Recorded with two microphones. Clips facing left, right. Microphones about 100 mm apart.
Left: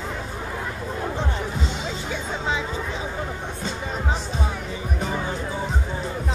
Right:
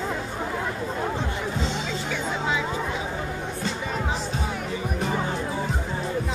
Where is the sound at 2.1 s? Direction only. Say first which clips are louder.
Even; 25° left (ahead or behind).